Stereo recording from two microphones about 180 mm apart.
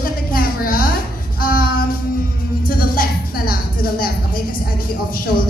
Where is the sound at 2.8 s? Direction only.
55° left (ahead or behind).